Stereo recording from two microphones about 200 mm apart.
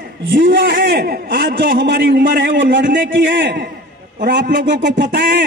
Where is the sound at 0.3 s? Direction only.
60° right (ahead or behind).